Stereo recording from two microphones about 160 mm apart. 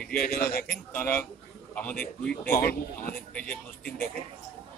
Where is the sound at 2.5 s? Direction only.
65° left (ahead or behind).